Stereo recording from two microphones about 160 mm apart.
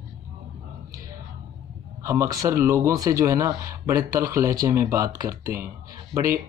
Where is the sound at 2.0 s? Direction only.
20° right (ahead or behind).